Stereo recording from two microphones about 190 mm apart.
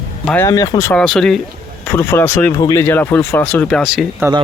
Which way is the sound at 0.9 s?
Centre (ahead or behind).